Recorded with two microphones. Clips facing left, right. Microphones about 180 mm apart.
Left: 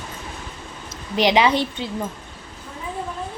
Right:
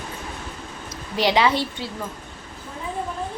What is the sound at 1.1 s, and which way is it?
Speech, 20° left (ahead or behind).